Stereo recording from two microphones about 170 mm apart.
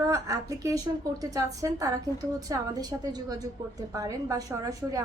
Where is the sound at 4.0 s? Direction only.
20° right (ahead or behind).